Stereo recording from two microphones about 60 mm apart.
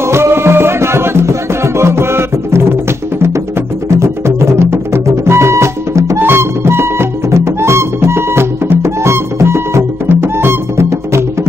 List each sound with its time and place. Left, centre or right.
0.0 s music: right
6.1 s music: right